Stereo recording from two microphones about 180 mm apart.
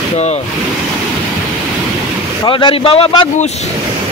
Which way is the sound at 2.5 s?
25° left (ahead or behind).